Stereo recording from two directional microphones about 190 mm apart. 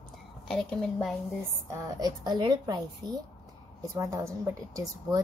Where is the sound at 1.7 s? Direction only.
20° right (ahead or behind).